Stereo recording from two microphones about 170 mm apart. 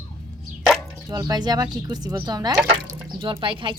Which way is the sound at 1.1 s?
25° right (ahead or behind).